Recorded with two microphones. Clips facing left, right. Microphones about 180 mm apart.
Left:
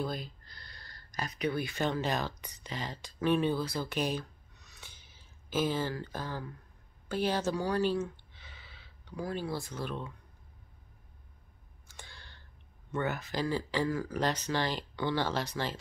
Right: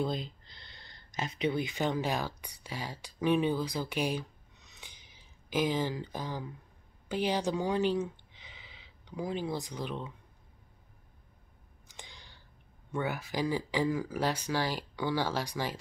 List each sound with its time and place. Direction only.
0.0 s speech: 20° right (ahead or behind)
11.9 s a sound: 15° right (ahead or behind)
12.9 s speech: 10° right (ahead or behind)